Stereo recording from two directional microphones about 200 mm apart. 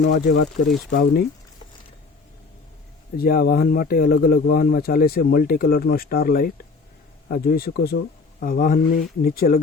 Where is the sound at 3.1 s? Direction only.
50° left (ahead or behind).